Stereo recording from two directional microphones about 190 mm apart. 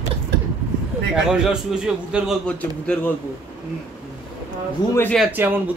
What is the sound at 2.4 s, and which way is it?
Speech, 5° left (ahead or behind).